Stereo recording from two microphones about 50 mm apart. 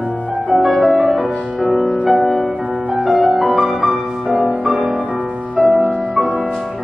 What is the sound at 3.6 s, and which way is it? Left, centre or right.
Music, right.